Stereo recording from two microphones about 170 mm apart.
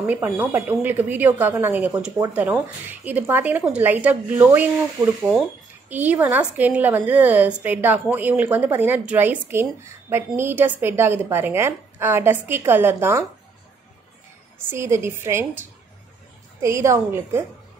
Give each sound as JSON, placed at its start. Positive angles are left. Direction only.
{"t": 0.0, "sound": "a woman's voice", "side_deg": -10}
{"t": 5.9, "sound": "a woman's voice", "side_deg": -10}
{"t": 14.7, "sound": "a woman's voice", "side_deg": -15}
{"t": 16.6, "sound": "a woman's voice", "side_deg": -15}